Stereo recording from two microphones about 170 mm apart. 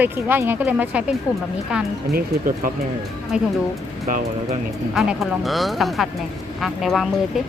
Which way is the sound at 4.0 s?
45° right (ahead or behind).